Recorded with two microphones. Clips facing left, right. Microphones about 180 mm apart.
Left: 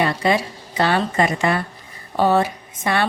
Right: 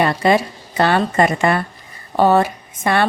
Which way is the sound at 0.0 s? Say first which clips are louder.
Right 4 dB; 55° right (ahead or behind).